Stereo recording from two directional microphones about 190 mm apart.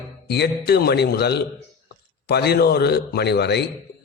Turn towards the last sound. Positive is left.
turn(degrees=60)  # may be behind; listen again after turning